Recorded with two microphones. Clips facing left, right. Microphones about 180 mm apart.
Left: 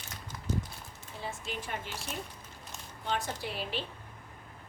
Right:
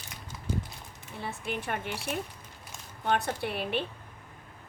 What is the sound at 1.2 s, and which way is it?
Speech, 60° right (ahead or behind).